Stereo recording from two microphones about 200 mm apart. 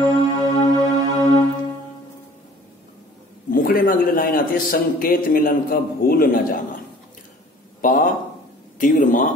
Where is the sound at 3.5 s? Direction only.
45° left (ahead or behind).